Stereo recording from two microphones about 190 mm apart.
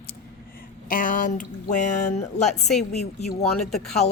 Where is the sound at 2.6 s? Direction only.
Centre (ahead or behind).